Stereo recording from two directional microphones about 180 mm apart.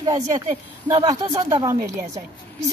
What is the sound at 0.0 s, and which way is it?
A woman's voice, 20° right (ahead or behind).